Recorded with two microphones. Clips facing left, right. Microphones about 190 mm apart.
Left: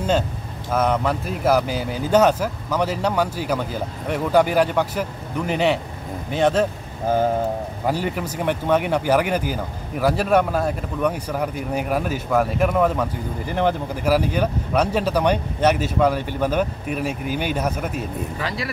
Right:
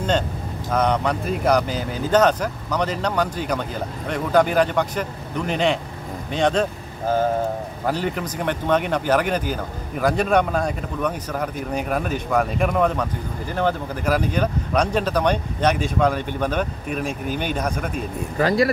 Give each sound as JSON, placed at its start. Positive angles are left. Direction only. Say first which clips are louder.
{"t": 0.7, "sound": "speech", "louder": "even", "side_deg": 5}
{"t": 7.8, "sound": "speech", "louder": "even", "side_deg": 10}
{"t": 18.4, "sound": "speech", "louder": "right 13 dB", "side_deg": -45}